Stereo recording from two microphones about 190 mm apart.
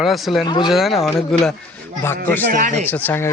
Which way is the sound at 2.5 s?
40° right (ahead or behind).